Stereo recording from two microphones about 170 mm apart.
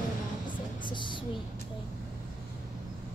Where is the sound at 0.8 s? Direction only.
30° left (ahead or behind).